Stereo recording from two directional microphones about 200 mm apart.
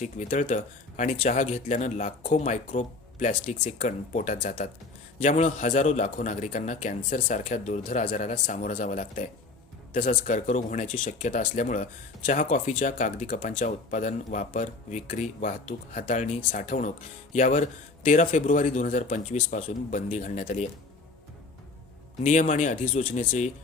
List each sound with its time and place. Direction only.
0.0 s a man's voice: 35° left (ahead or behind)
22.2 s a man's voice: 35° left (ahead or behind)